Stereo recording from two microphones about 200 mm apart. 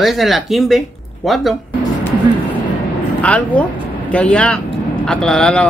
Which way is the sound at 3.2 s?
5° left (ahead or behind).